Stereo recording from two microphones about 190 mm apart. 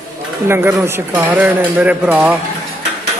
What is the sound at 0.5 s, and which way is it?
Speech, 15° right (ahead or behind).